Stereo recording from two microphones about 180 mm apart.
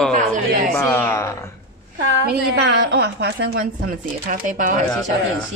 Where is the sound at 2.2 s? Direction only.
60° right (ahead or behind).